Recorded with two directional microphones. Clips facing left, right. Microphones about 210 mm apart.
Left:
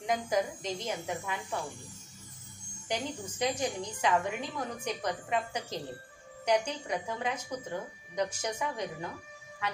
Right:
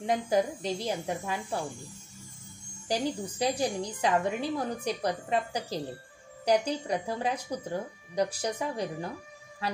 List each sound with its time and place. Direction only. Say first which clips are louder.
0.0 s a woman's voice: right 3 dB; 30° right (ahead or behind)
2.9 s a woman's voice: right 5 dB; 35° right (ahead or behind)
9.6 s music: right 3 dB; 35° right (ahead or behind)